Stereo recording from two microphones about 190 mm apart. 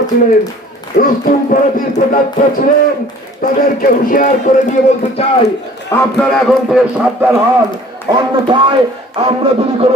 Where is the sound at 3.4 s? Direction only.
45° left (ahead or behind).